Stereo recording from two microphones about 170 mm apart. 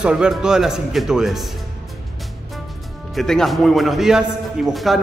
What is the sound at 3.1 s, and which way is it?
A man's voice, 5° left (ahead or behind).